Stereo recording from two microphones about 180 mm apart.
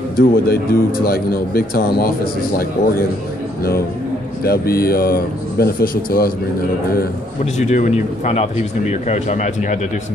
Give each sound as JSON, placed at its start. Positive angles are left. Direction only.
{"t": 0.1, "sound": "a man's voice", "side_deg": 55}
{"t": 4.5, "sound": "a man's voice", "side_deg": 60}
{"t": 7.5, "sound": "speech", "side_deg": 40}